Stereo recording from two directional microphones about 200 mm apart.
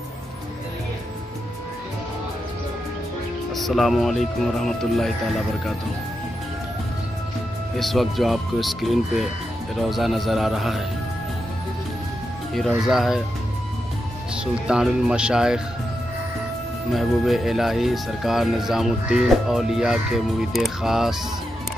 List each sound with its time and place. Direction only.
3.5 s speech: centre (ahead or behind)
7.7 s speech: centre (ahead or behind)
12.5 s speech: centre (ahead or behind)
14.3 s speech: 5° right (ahead or behind)
16.9 s speech: centre (ahead or behind)